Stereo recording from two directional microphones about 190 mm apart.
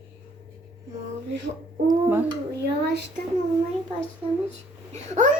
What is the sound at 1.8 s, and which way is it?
Speech, 10° right (ahead or behind).